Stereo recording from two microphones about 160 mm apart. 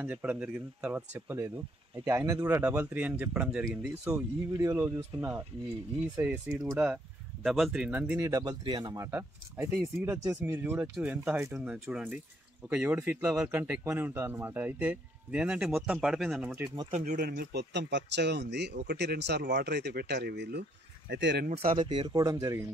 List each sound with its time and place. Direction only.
0.0 s speech: 10° right (ahead or behind)
3.9 s speech: 20° right (ahead or behind)
8.2 s speech: 20° right (ahead or behind)
16.9 s speech: 50° right (ahead or behind); by 20.6 s 90° right
21.7 s speech: 30° right (ahead or behind)